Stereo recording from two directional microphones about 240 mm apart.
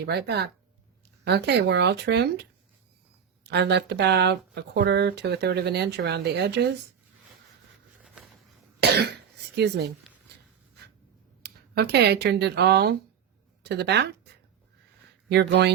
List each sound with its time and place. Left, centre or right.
0.0 s speech: right
8.8 s cough: right
9.6 s speech: right
11.4 s speech: right
15.3 s speech: right